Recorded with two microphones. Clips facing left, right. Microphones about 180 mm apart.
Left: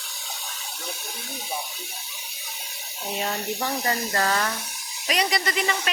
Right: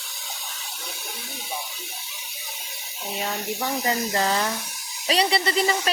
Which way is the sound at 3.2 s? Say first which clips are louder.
Even; centre (ahead or behind).